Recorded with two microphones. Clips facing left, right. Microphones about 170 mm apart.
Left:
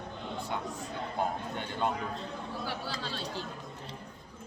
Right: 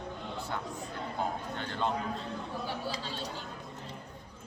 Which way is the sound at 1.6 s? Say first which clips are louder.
Left 1 dB; 15° left (ahead or behind).